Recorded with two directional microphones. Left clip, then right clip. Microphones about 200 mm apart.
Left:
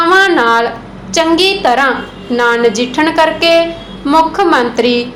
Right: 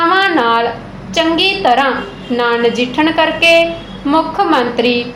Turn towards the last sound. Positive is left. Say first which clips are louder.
# left 2 dB
turn(degrees=25)  # may be behind; listen again after turning